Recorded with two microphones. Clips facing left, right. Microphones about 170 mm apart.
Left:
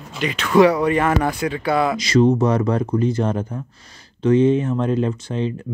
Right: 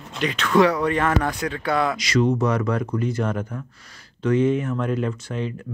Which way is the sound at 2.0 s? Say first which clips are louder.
Left 5 dB; 30° left (ahead or behind).